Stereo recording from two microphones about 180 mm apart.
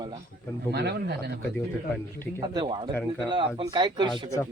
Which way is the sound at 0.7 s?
65° right (ahead or behind).